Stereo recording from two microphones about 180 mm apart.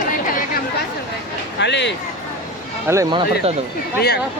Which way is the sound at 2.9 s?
20° right (ahead or behind).